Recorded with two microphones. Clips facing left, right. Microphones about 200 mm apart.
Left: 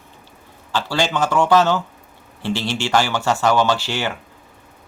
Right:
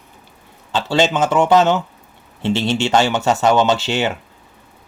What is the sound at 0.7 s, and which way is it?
Speech, 20° right (ahead or behind).